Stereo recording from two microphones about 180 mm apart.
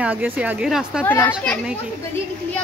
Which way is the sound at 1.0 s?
10° left (ahead or behind).